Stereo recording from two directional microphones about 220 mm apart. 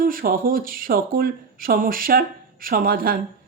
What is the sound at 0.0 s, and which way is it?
Speech, 40° right (ahead or behind).